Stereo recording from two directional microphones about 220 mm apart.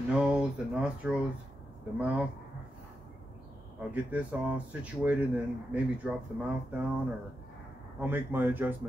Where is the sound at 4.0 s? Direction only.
5° right (ahead or behind).